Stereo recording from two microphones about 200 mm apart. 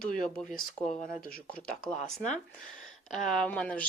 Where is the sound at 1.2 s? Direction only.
5° left (ahead or behind).